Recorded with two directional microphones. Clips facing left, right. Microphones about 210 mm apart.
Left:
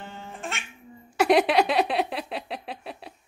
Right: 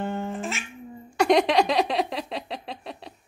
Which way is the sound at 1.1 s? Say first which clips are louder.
Even; 5° left (ahead or behind).